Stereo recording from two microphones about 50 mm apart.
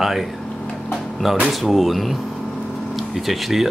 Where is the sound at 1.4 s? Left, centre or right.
Centre.